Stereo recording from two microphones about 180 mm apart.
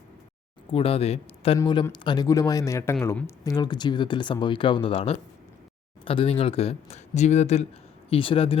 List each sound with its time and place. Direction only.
0.7 s speech: 30° left (ahead or behind)